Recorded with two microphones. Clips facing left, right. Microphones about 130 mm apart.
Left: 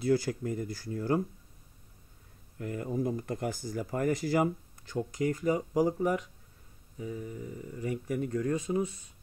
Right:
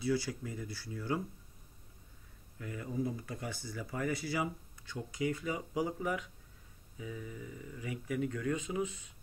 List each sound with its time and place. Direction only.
0.0 s speech: 50° left (ahead or behind)
2.6 s speech: 50° left (ahead or behind)